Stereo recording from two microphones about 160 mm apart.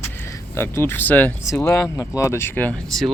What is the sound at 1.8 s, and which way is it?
Speech, 20° left (ahead or behind).